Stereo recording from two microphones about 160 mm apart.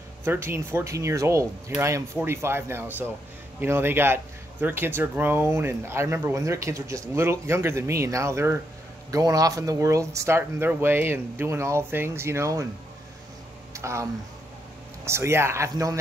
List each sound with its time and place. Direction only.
0.2 s speech: 15° right (ahead or behind)
13.7 s speech: 20° right (ahead or behind)
15.0 s speech: 15° right (ahead or behind)